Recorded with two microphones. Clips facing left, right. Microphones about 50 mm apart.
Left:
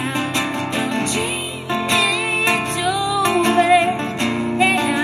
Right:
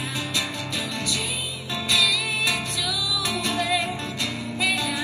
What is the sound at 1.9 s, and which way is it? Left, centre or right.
Music, left.